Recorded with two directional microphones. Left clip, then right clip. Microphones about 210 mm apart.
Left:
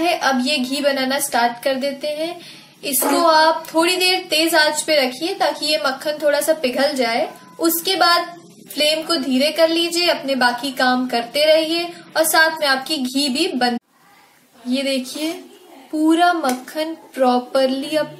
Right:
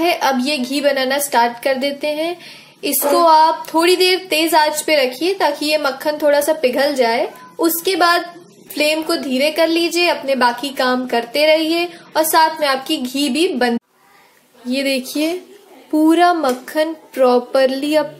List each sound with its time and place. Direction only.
0.0 s speech: 30° right (ahead or behind)